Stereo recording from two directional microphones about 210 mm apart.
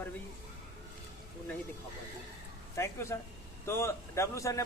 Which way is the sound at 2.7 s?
10° left (ahead or behind).